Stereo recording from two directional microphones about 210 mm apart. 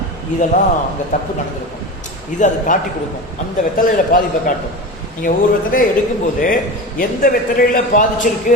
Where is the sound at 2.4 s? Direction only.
35° left (ahead or behind).